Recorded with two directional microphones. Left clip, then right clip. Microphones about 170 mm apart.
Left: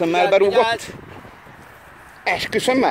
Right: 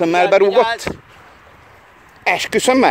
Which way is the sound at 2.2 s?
35° right (ahead or behind).